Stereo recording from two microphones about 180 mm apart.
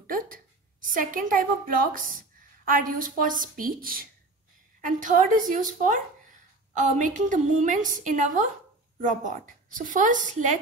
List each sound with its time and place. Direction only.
0.0 s a woman's voice: 50° right (ahead or behind)